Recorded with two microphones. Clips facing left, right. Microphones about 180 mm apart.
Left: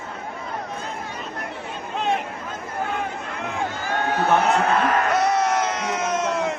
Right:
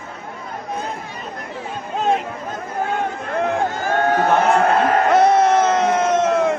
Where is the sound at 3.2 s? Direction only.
55° right (ahead or behind).